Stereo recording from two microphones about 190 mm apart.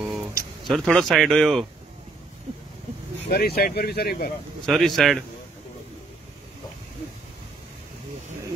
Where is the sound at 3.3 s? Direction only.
55° left (ahead or behind).